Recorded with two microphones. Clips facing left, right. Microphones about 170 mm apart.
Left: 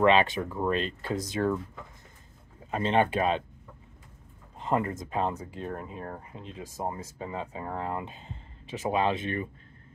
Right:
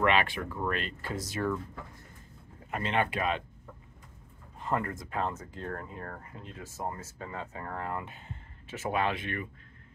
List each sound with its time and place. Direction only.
0.0 s speech: 25° left (ahead or behind)
2.7 s speech: 30° left (ahead or behind)
4.6 s speech: 20° left (ahead or behind)